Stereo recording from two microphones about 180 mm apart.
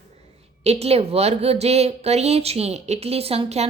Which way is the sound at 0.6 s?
35° right (ahead or behind).